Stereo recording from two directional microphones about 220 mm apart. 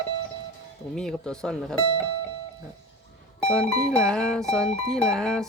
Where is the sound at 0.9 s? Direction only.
5° left (ahead or behind).